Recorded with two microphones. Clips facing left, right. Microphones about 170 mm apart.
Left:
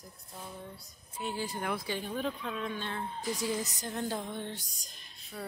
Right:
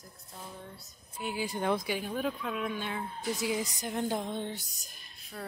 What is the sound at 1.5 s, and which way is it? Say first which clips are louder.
Speech: right 5 dB; 25° right (ahead or behind).